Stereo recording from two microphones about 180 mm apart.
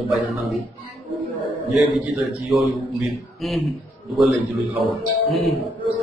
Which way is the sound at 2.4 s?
Centre (ahead or behind).